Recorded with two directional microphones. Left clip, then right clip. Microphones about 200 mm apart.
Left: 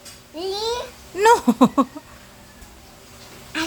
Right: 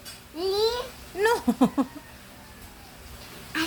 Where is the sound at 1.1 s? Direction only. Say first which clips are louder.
Left 8 dB; 40° left (ahead or behind).